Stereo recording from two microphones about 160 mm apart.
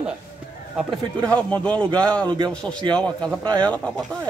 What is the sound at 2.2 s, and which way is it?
Speech, 30° right (ahead or behind).